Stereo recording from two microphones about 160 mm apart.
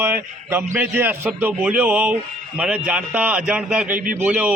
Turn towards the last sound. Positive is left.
turn(degrees=-10)  # may be behind; listen again after turning